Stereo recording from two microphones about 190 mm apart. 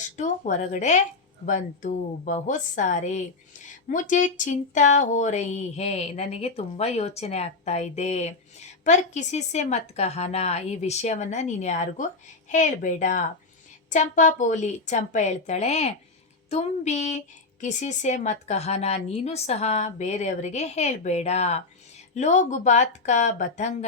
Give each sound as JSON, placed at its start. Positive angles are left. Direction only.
{"t": 0.2, "sound": "speech", "side_deg": 40}